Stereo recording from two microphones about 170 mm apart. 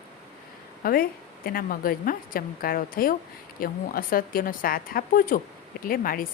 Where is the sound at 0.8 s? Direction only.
60° left (ahead or behind).